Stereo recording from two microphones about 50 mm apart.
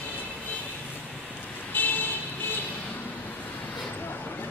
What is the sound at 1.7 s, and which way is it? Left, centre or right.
Vehicle, left.